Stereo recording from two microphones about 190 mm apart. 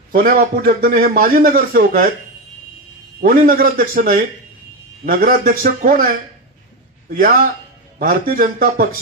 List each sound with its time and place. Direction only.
0.1 s a man's voice: 50° right (ahead or behind)
3.2 s a man's voice: 50° right (ahead or behind)
7.1 s a man's voice: 50° right (ahead or behind)